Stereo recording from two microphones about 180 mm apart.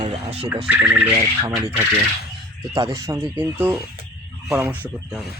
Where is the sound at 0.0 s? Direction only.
35° right (ahead or behind).